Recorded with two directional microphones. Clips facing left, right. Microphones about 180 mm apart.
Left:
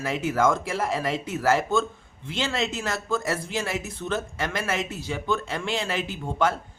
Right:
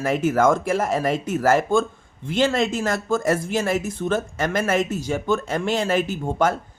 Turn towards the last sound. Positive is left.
turn(degrees=-45)  # may be behind; listen again after turning